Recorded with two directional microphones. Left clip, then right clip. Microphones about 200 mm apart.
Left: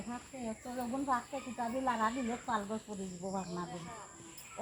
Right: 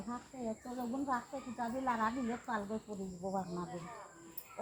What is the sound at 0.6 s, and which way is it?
Speech, 35° left (ahead or behind).